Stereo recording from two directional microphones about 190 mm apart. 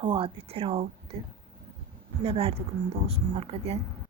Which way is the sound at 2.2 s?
30° right (ahead or behind).